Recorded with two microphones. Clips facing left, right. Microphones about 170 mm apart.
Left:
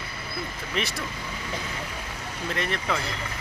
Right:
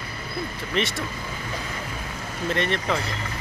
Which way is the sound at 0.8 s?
Centre (ahead or behind).